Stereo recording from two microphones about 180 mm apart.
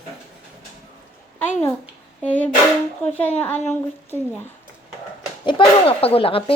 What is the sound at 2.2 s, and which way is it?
A woman's voice, 10° left (ahead or behind).